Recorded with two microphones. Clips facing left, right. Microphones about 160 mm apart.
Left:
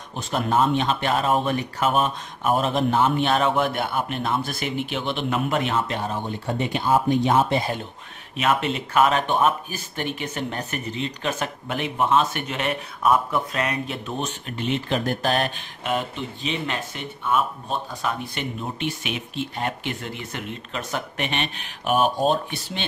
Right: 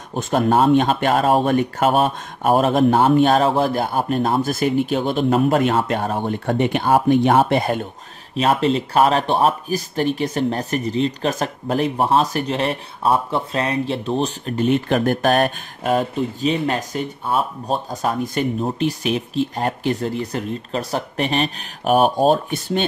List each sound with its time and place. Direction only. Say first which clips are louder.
0.1 s a man's voice: right 6 dB; 45° right (ahead or behind)
1.9 s speech: right 1 dB; 35° right (ahead or behind)
2.5 s a man's voice: right 6 dB; 45° right (ahead or behind)
8.4 s speech: right 5 dB; 35° right (ahead or behind); by 15.9 s 50° right (ahead or behind)
15.9 s speech: right 7 dB; 40° right (ahead or behind)